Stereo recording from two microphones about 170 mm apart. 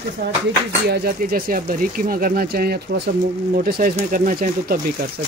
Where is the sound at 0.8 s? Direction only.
65° right (ahead or behind).